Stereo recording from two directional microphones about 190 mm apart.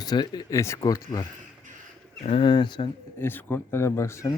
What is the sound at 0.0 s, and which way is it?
Speech, 20° left (ahead or behind).